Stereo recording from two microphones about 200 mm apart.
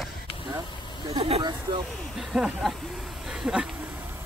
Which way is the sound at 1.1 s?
30° right (ahead or behind).